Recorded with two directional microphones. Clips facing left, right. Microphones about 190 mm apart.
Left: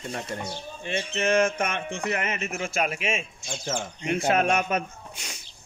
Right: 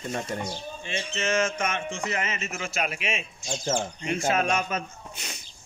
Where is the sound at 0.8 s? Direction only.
55° left (ahead or behind).